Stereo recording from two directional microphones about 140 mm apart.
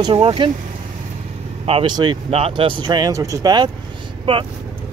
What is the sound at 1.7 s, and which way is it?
Speech, 40° right (ahead or behind).